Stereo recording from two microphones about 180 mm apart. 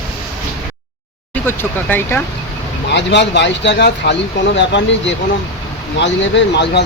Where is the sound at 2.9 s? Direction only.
75° left (ahead or behind).